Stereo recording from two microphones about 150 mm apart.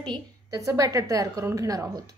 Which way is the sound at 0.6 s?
20° right (ahead or behind).